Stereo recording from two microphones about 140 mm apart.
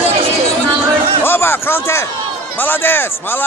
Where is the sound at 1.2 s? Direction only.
15° left (ahead or behind).